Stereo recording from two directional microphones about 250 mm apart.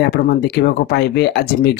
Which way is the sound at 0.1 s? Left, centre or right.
Left.